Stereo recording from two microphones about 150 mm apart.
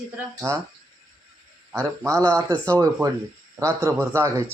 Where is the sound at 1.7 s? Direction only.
20° right (ahead or behind).